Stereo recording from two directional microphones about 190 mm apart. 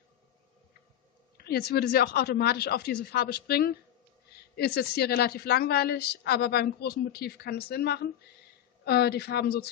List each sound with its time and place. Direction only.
1.4 s a woman's voice: 55° left (ahead or behind)